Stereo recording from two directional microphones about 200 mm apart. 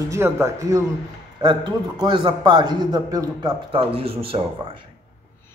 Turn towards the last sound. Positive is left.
turn(degrees=-30)  # may be behind; listen again after turning